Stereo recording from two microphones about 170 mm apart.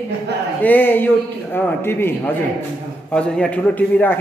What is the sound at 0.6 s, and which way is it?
A man's voice, 10° left (ahead or behind).